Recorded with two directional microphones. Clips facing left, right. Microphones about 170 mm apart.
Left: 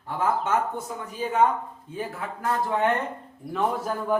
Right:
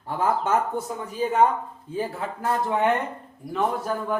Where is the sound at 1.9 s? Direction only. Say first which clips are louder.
Right 4 dB; 30° right (ahead or behind).